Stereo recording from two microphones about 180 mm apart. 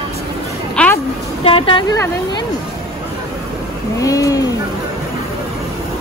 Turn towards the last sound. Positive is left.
turn(degrees=20)  # may be behind; listen again after turning